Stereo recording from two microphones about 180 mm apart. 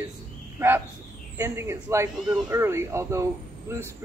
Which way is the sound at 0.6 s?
15° right (ahead or behind).